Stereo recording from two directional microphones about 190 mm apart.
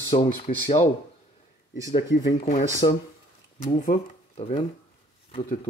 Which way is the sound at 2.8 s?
30° left (ahead or behind).